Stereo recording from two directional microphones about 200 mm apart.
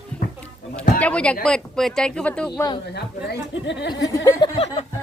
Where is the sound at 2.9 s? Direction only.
55° left (ahead or behind).